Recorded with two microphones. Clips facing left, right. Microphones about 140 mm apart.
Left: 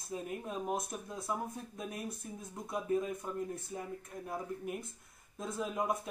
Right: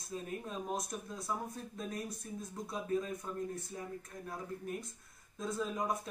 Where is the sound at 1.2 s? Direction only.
20° left (ahead or behind).